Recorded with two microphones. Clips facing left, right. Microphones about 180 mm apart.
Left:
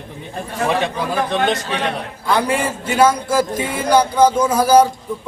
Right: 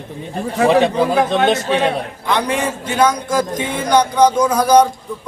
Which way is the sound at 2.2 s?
5° left (ahead or behind).